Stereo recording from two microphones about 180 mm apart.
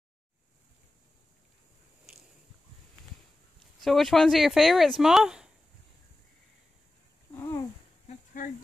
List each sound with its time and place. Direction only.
3.8 s speech: centre (ahead or behind)
7.3 s cat: 15° left (ahead or behind)
8.4 s a sound: 50° left (ahead or behind)